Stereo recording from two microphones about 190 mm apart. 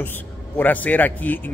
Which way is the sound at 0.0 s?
10° left (ahead or behind).